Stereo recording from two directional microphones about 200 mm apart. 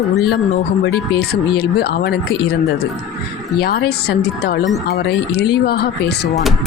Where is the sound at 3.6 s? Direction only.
55° left (ahead or behind).